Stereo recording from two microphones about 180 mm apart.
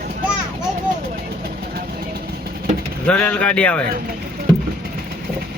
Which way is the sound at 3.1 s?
5° left (ahead or behind).